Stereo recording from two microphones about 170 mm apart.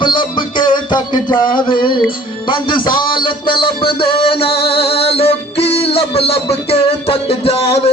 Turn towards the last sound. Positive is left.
turn(degrees=35)  # may be behind; listen again after turning